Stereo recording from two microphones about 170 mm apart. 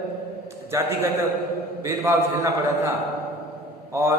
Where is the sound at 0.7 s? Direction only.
15° right (ahead or behind).